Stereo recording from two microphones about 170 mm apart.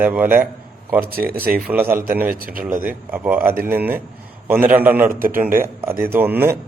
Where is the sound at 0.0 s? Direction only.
10° right (ahead or behind).